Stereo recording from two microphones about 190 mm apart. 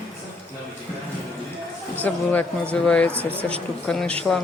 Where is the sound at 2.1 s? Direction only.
5° left (ahead or behind).